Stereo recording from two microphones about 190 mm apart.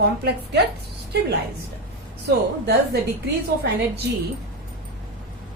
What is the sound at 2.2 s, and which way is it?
A woman's voice, 60° right (ahead or behind).